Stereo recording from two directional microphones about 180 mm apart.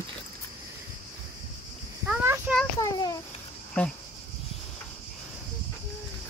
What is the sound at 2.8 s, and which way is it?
Babbling, 20° left (ahead or behind).